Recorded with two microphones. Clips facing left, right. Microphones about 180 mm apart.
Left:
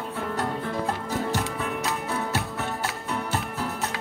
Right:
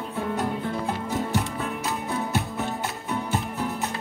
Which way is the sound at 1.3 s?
75° left (ahead or behind).